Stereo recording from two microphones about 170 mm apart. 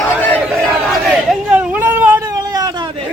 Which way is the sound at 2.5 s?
20° right (ahead or behind).